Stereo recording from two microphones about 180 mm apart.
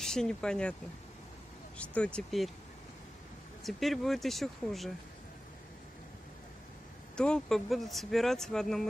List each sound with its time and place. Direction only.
0.0 s speech: 5° left (ahead or behind)
2.1 s speech: centre (ahead or behind)
3.6 s speech: centre (ahead or behind)
7.2 s speech: 5° left (ahead or behind)